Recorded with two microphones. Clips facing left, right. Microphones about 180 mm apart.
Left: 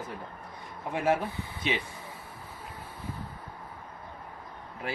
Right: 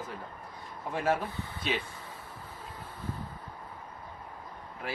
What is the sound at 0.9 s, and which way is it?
Speech, 15° left (ahead or behind).